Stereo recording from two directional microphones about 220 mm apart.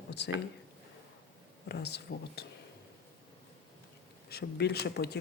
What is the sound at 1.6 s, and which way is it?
Speech, 50° left (ahead or behind).